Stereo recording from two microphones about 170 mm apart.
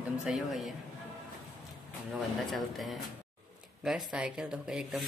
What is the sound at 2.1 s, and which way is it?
Speech, centre (ahead or behind).